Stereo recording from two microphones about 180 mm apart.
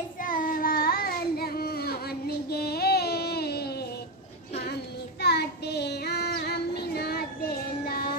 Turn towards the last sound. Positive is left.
turn(degrees=60)  # may be behind; listen again after turning